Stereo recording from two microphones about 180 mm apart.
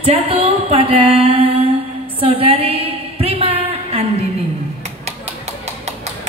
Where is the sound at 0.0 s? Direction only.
30° right (ahead or behind).